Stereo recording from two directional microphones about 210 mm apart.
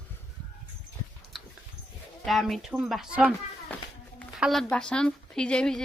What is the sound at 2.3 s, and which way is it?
Speech, centre (ahead or behind).